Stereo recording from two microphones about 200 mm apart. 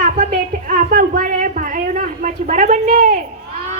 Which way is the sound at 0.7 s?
45° right (ahead or behind).